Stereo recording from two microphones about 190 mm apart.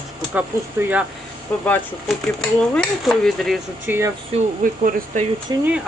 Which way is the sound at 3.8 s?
10° right (ahead or behind).